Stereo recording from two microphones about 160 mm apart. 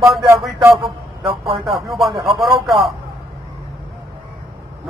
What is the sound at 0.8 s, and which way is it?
Speech, 30° right (ahead or behind).